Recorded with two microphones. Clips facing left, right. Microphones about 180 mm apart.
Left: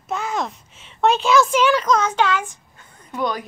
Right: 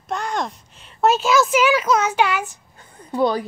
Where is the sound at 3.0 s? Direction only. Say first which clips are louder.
Right 5 dB; 30° right (ahead or behind).